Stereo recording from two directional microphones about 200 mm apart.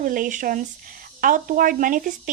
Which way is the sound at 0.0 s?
40° right (ahead or behind).